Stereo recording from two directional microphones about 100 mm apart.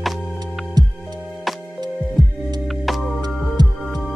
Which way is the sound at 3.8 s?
Centre (ahead or behind).